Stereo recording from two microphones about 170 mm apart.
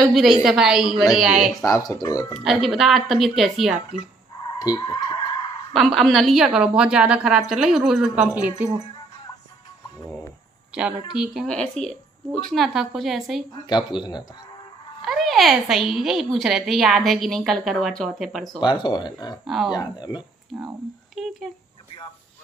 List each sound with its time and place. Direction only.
0.1 s a woman's voice: centre (ahead or behind)
1.6 s speech: 20° left (ahead or behind)
2.4 s a woman's voice: centre (ahead or behind)
4.4 s skidding: 25° left (ahead or behind)
5.8 s a woman's voice: centre (ahead or behind)
10.7 s a woman's voice: 5° right (ahead or behind)
13.7 s speech: 25° left (ahead or behind)
15.0 s a woman's voice: centre (ahead or behind)
18.6 s speech: 25° left (ahead or behind)
19.4 s a woman's voice: centre (ahead or behind)
19.7 s speech: 25° left (ahead or behind)
20.5 s speech: centre (ahead or behind)